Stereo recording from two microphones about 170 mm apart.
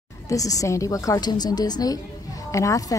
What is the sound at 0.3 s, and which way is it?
A woman's voice, 20° left (ahead or behind).